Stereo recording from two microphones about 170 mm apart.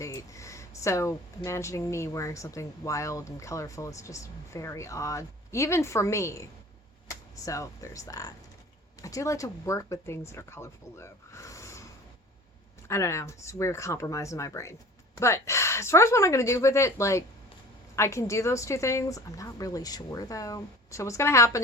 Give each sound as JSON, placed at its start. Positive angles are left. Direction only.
{"t": 0.0, "sound": "a sound", "side_deg": 20}
{"t": 1.5, "sound": "speech", "side_deg": 15}
{"t": 12.9, "sound": "speech", "side_deg": 15}